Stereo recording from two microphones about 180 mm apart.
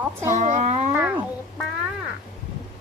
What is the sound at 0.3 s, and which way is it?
Speech, 40° right (ahead or behind).